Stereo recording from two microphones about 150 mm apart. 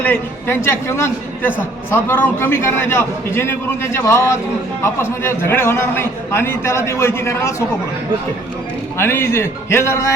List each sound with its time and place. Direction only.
0.0 s a man's voice: 15° left (ahead or behind)
9.0 s a man's voice: 15° left (ahead or behind)